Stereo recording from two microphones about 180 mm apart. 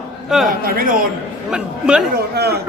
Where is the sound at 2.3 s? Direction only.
65° right (ahead or behind).